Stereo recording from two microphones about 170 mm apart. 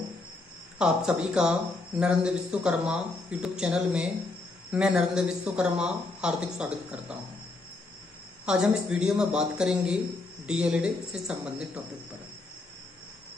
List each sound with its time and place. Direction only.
0.7 s speech: 5° right (ahead or behind)
8.5 s speech: 5° right (ahead or behind)